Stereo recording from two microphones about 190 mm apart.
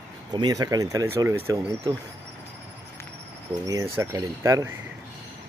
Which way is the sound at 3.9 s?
15° right (ahead or behind).